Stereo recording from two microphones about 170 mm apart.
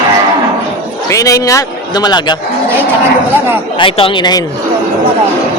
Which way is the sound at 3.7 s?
30° left (ahead or behind).